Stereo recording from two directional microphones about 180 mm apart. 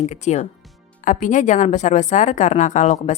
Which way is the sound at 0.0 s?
40° left (ahead or behind).